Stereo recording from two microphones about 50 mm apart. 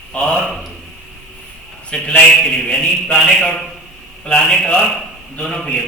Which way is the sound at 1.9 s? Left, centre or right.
Centre.